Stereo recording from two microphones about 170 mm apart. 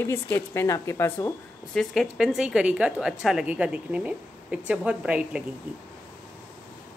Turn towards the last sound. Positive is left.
turn(degrees=-5)  # may be behind; listen again after turning